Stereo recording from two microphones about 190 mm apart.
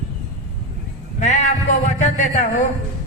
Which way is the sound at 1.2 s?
40° left (ahead or behind).